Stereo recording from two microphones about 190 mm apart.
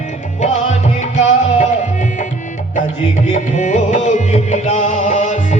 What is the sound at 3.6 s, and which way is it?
Music, 40° left (ahead or behind).